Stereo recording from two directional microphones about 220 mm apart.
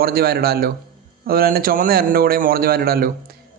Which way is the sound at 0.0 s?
45° right (ahead or behind).